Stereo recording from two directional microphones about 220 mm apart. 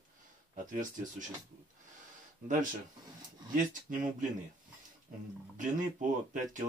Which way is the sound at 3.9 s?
40° right (ahead or behind).